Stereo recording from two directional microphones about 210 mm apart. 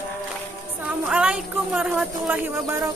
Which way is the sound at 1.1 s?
5° right (ahead or behind).